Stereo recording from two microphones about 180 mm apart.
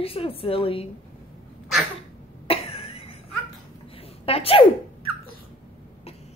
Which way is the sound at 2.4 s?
30° left (ahead or behind).